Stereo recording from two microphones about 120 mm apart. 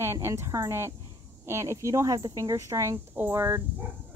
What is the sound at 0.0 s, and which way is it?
Speech, 20° right (ahead or behind).